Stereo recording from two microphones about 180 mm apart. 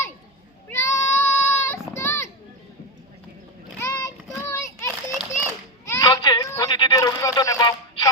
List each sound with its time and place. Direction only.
0.7 s child singing: 15° left (ahead or behind)
2.0 s children playing: 15° left (ahead or behind)
3.8 s child singing: 15° left (ahead or behind)
5.4 s children playing: 15° left (ahead or behind)
6.6 s a sound: 25° left (ahead or behind)